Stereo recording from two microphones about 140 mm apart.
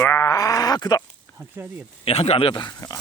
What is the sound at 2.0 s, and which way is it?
Speech, 45° left (ahead or behind).